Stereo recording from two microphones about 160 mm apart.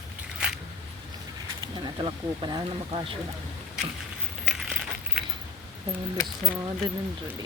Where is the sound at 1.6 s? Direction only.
25° right (ahead or behind).